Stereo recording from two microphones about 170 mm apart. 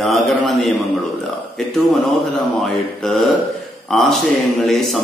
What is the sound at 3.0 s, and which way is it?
Speech, centre (ahead or behind).